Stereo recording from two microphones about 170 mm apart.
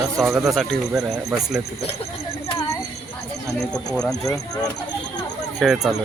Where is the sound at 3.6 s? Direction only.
5° left (ahead or behind).